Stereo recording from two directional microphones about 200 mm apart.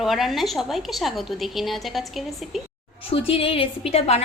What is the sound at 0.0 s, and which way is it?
A woman's voice, centre (ahead or behind).